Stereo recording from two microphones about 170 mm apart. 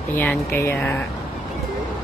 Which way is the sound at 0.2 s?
10° left (ahead or behind).